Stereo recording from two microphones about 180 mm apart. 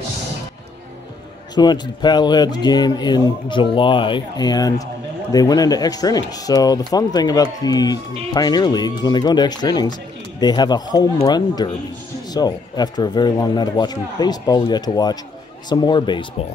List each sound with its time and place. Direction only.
1.5 s speech: 25° left (ahead or behind)